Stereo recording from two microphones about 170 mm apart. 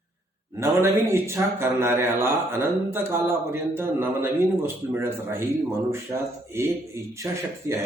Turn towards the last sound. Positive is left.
turn(degrees=-15)  # may be behind; listen again after turning